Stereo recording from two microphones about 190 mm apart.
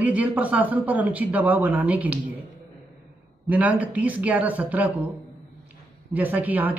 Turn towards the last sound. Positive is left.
turn(degrees=-10)  # may be behind; listen again after turning